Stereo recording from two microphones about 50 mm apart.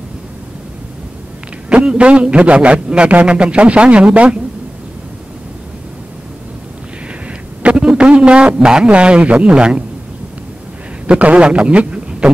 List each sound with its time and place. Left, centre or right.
1.7 s a man's voice: right
7.6 s a sound: centre
8.5 s a man's voice: centre
11.1 s a man's voice: right